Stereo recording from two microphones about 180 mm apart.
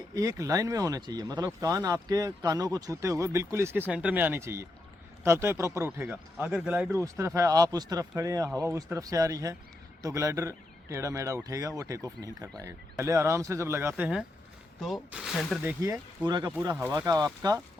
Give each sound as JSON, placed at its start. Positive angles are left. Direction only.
{"t": 0.1, "sound": "speech", "side_deg": -20}
{"t": 15.6, "sound": "speech", "side_deg": -15}